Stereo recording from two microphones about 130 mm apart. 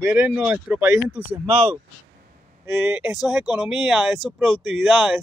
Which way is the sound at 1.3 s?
50° right (ahead or behind).